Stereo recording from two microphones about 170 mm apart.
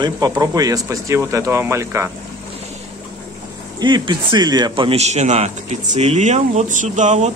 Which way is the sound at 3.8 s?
25° right (ahead or behind).